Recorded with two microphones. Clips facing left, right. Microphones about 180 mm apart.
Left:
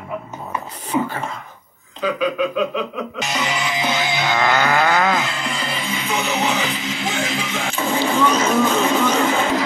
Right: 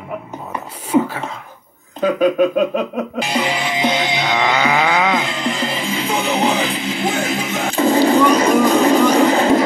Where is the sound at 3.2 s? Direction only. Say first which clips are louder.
Right 4 dB; 30° right (ahead or behind).